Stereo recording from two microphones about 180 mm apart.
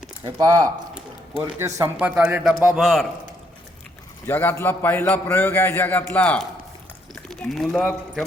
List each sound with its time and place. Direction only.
0.3 s a man's voice: 20° right (ahead or behind); by 3.1 s centre (ahead or behind)
4.3 s a man's voice: 10° left (ahead or behind)